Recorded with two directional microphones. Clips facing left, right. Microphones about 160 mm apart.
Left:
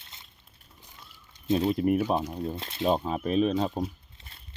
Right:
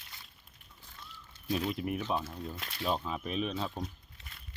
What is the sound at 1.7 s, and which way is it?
Speech, 45° left (ahead or behind).